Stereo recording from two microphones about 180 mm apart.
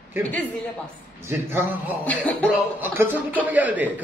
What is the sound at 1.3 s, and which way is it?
Speech, 15° right (ahead or behind).